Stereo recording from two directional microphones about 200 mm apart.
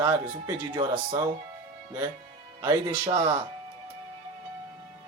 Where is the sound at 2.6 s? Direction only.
25° right (ahead or behind).